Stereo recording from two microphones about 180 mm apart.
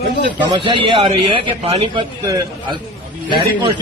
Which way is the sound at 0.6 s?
25° right (ahead or behind).